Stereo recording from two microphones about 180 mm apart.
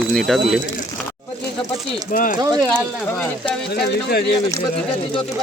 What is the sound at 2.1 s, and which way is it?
Speech, 50° left (ahead or behind).